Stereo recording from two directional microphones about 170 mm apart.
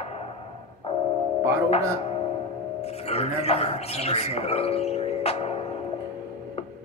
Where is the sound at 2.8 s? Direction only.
35° left (ahead or behind).